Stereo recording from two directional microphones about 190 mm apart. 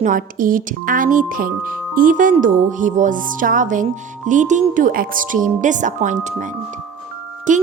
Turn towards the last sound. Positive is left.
turn(degrees=-40)  # may be behind; listen again after turning